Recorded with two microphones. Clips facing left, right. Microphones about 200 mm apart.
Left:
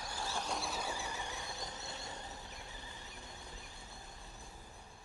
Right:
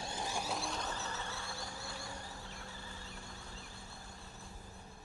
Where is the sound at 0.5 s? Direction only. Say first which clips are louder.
Even; 5° left (ahead or behind).